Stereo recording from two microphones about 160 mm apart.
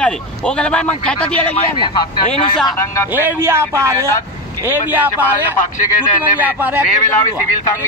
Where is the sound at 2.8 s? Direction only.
20° left (ahead or behind).